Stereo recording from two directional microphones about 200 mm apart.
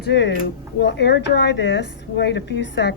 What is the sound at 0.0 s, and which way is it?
Speech, 60° left (ahead or behind).